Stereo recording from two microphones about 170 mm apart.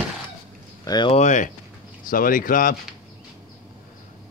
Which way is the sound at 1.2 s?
45° left (ahead or behind).